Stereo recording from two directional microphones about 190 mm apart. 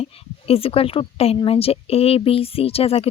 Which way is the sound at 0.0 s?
30° left (ahead or behind).